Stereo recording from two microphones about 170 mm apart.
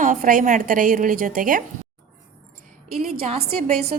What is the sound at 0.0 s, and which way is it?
A woman's voice, 50° right (ahead or behind).